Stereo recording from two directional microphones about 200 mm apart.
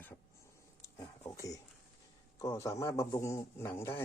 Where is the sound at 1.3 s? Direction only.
15° left (ahead or behind).